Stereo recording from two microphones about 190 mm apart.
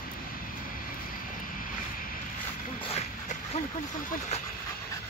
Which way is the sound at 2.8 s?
35° left (ahead or behind).